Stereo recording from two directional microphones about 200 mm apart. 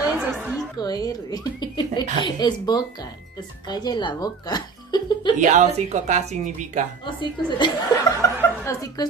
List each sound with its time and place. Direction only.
0.0 s chatter: 10° right (ahead or behind)
0.7 s speech: 20° left (ahead or behind)
5.4 s speech: 35° right (ahead or behind)
7.1 s speech: 25° left (ahead or behind)